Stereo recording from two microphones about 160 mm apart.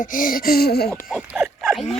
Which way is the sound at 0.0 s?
60° left (ahead or behind).